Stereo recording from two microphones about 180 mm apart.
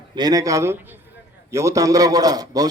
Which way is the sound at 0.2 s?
20° right (ahead or behind).